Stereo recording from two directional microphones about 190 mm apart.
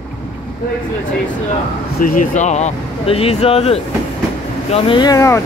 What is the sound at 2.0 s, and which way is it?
Speech, 45° left (ahead or behind).